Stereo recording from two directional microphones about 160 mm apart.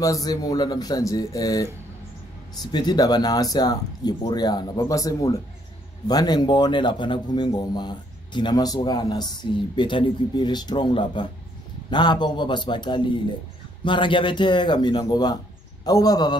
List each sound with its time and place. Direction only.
0.0 s speech: 20° left (ahead or behind)